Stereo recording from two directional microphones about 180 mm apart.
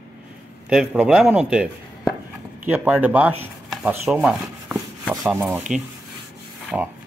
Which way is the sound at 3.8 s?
10° right (ahead or behind).